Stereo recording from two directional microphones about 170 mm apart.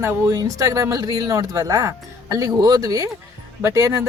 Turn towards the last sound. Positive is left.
turn(degrees=-15)  # may be behind; listen again after turning